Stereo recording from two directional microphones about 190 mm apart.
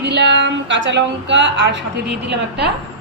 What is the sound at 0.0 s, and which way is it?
A woman's voice, 65° right (ahead or behind).